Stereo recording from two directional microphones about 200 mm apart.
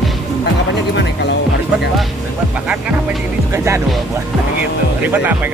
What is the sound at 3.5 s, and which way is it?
Music, 15° right (ahead or behind).